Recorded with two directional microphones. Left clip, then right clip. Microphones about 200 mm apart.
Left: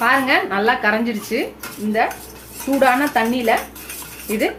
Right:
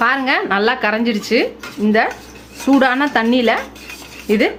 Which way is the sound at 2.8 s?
45° right (ahead or behind).